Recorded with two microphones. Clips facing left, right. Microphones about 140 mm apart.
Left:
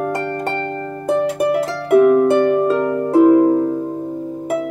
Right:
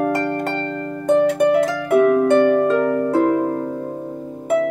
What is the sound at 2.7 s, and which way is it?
Harp, 25° left (ahead or behind).